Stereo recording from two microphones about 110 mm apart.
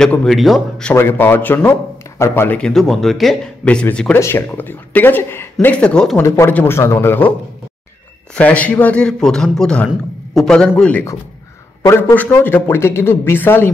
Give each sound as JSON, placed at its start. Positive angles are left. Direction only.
{"t": 0.0, "sound": "a man's voice", "side_deg": 5}
{"t": 1.1, "sound": "a man's voice", "side_deg": 20}
{"t": 2.6, "sound": "a man's voice", "side_deg": 0}
{"t": 6.2, "sound": "a man's voice", "side_deg": 25}
{"t": 8.4, "sound": "speech", "side_deg": 15}
{"t": 11.8, "sound": "a man's voice", "side_deg": 20}